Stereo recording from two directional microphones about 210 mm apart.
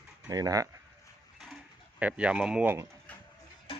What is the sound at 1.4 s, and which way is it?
Bird, centre (ahead or behind).